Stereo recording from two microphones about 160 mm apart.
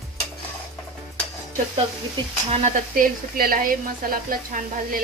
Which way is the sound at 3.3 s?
65° right (ahead or behind).